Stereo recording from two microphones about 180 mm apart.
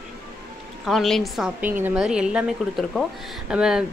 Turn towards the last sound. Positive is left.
turn(degrees=-5)  # may be behind; listen again after turning